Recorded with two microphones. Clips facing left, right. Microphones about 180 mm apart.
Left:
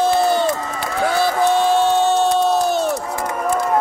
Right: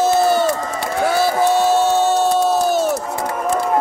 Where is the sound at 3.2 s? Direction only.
5° right (ahead or behind).